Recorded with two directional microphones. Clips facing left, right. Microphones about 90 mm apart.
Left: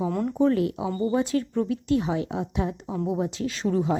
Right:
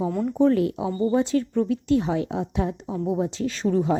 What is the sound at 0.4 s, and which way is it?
Speech, 30° right (ahead or behind).